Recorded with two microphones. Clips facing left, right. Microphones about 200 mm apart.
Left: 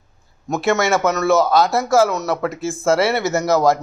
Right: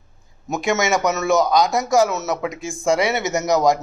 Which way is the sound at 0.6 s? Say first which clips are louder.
Left 3 dB; 15° right (ahead or behind).